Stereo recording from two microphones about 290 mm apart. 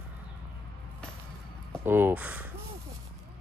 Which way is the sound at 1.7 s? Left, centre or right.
Centre.